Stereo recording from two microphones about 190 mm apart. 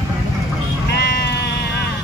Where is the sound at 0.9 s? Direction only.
60° left (ahead or behind).